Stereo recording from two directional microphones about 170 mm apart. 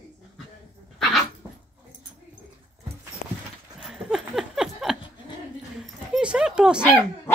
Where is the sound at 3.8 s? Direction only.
5° right (ahead or behind).